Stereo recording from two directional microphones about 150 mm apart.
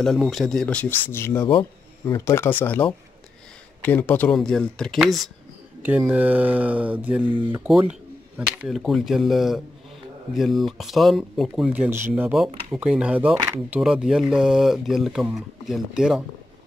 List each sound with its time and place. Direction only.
0.0 s speech: centre (ahead or behind)
1.5 s speech: 30° left (ahead or behind)
2.1 s speech: 20° left (ahead or behind); by 5.3 s centre (ahead or behind)
5.8 s speech: 10° right (ahead or behind)